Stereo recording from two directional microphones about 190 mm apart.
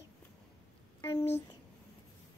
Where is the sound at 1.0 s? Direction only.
15° left (ahead or behind).